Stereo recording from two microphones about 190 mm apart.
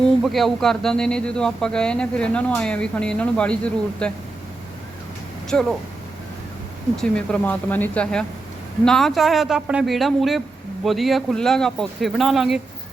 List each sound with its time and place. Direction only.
0.2 s a man's voice: centre (ahead or behind)
5.5 s a man's voice: 5° left (ahead or behind)
6.9 s a man's voice: 5° left (ahead or behind)